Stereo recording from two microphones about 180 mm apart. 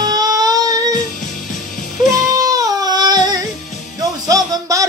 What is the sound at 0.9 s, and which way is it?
Music, 45° left (ahead or behind).